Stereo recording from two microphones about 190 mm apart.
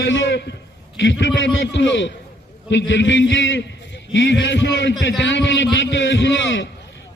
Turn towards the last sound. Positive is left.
turn(degrees=75)  # may be behind; listen again after turning